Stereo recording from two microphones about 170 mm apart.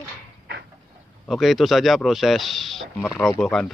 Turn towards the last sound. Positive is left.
turn(degrees=5)  # may be behind; listen again after turning